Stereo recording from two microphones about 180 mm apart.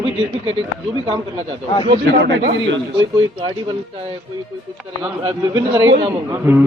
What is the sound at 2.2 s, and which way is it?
Speech, 80° right.